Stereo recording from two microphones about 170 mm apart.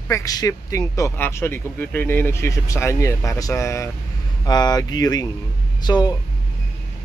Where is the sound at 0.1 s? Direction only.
20° left (ahead or behind).